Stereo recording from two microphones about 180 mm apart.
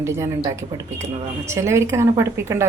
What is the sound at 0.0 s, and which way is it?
A woman's voice, 15° right (ahead or behind).